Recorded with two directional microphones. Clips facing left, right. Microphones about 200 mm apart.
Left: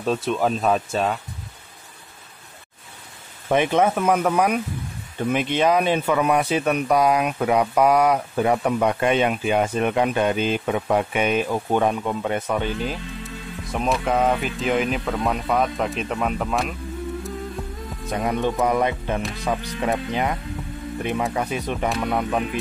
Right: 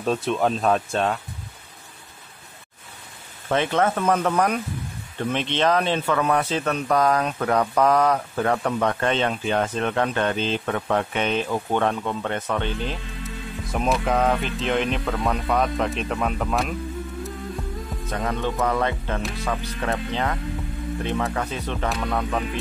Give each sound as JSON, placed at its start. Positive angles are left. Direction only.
{"t": 0.0, "sound": "speech", "side_deg": 0}
{"t": 3.4, "sound": "speech", "side_deg": 15}
{"t": 18.1, "sound": "speech", "side_deg": 15}
{"t": 21.8, "sound": "speech", "side_deg": 0}